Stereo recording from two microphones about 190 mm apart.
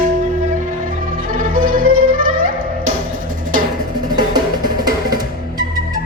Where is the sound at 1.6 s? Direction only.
45° right (ahead or behind).